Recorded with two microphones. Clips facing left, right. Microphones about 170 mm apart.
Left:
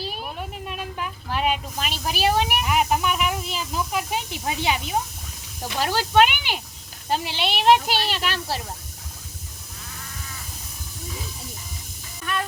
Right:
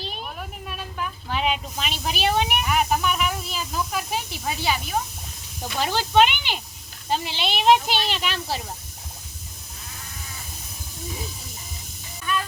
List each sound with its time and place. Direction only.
0.0 s a sound: 10° left (ahead or behind)
1.3 s speech: centre (ahead or behind)
2.6 s speech: 15° left (ahead or behind)
5.8 s speech: 10° left (ahead or behind)